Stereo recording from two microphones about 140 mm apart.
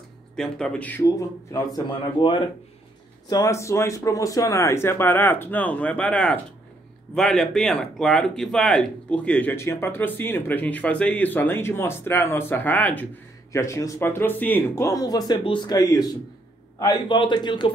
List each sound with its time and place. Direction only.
0.4 s speech: 5° left (ahead or behind)
1.9 s a man's voice: 35° left (ahead or behind)
3.3 s speech: 25° left (ahead or behind)
14.9 s a man's voice: 25° left (ahead or behind)